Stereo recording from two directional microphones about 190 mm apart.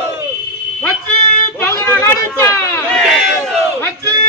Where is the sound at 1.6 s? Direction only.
15° left (ahead or behind).